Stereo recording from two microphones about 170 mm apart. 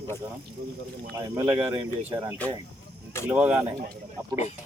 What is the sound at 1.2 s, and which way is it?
Speech, 15° right (ahead or behind).